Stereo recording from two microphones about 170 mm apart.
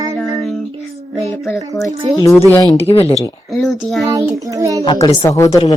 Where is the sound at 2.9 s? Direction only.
35° left (ahead or behind).